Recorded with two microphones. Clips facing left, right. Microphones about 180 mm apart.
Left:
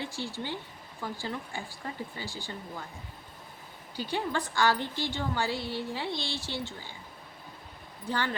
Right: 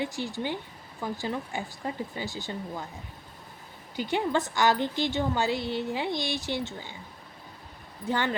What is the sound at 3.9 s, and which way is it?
A woman's voice, 20° right (ahead or behind).